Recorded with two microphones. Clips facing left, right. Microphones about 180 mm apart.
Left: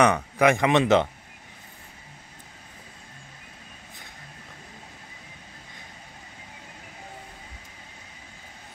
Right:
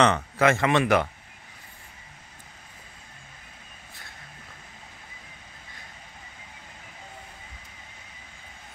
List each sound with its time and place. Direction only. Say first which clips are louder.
0.0 s speech: left 1 dB; 15° left (ahead or behind)